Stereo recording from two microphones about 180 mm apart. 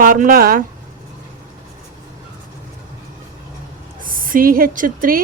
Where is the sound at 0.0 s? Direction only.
50° right (ahead or behind).